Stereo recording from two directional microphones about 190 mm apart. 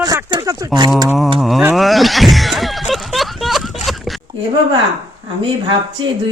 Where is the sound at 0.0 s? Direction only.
20° right (ahead or behind).